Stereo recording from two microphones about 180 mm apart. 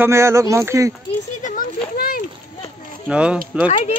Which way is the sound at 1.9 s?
50° left (ahead or behind).